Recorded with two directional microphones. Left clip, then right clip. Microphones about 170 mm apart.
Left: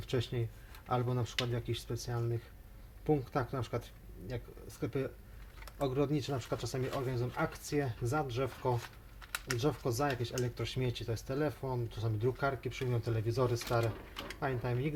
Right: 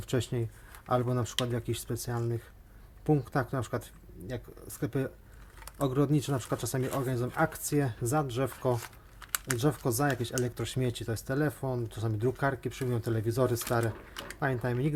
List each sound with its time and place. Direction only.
0.1 s speech: 45° right (ahead or behind)
9.2 s a sound: 20° right (ahead or behind)
9.6 s speech: 50° right (ahead or behind)